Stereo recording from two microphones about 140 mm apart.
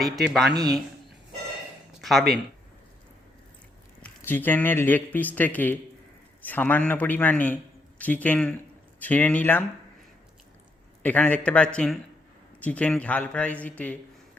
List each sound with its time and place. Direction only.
0.5 s speech: 30° right (ahead or behind)
2.0 s a sound: centre (ahead or behind)
4.0 s a man's voice: 15° left (ahead or behind)
11.0 s speech: 10° left (ahead or behind)